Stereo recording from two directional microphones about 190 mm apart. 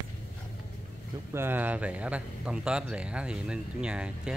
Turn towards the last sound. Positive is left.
turn(degrees=-5)  # may be behind; listen again after turning